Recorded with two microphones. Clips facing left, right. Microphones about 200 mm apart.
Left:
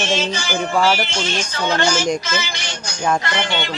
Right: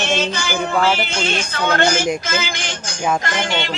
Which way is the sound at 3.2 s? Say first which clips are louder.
Even; 45° right (ahead or behind).